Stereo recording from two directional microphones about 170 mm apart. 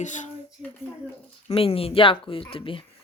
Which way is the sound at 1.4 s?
35° left (ahead or behind).